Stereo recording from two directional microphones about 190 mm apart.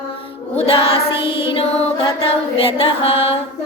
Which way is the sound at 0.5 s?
30° left (ahead or behind).